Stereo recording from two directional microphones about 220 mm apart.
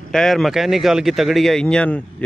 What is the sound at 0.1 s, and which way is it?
Speech, centre (ahead or behind).